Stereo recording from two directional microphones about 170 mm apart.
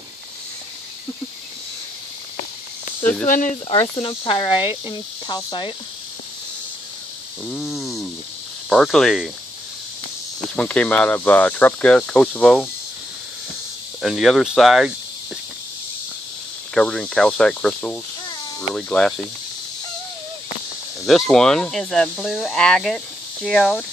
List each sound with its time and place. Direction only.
3.0 s speech: 10° left (ahead or behind)
3.3 s speech: 50° left (ahead or behind)
3.9 s cricket: 30° left (ahead or behind)
7.5 s a sound: centre (ahead or behind)
8.6 s speech: 5° left (ahead or behind)
10.5 s speech: 5° left (ahead or behind)
14.0 s speech: centre (ahead or behind)
16.7 s speech: 5° left (ahead or behind)
21.0 s speech: centre (ahead or behind)